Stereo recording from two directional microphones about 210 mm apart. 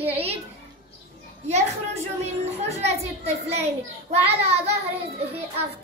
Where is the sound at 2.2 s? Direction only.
30° right (ahead or behind).